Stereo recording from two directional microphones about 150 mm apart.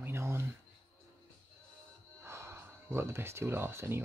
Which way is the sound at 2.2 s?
15° right (ahead or behind).